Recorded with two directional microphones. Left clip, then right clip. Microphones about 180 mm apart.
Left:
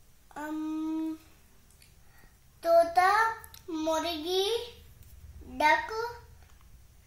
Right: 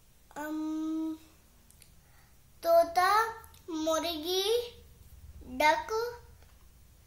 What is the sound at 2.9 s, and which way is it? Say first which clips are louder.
Child singing: left 2 dB; 35° right (ahead or behind).